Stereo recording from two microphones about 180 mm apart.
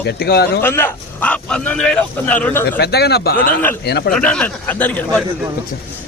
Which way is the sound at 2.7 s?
65° left (ahead or behind).